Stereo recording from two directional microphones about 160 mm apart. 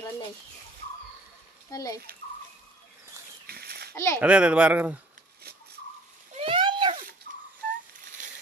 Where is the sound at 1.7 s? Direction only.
20° left (ahead or behind).